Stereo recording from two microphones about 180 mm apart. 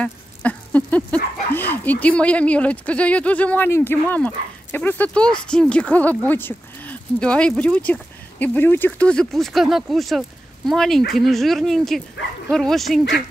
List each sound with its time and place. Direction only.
0.0 s speech: 5° left (ahead or behind)